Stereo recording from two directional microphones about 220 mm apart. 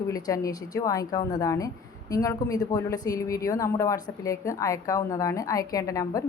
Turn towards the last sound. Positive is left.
turn(degrees=15)  # may be behind; listen again after turning